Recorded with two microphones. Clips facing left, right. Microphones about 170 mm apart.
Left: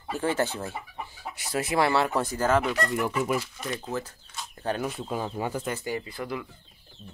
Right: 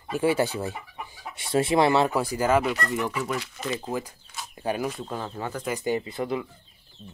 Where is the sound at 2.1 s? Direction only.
10° right (ahead or behind); by 3.4 s 10° left (ahead or behind).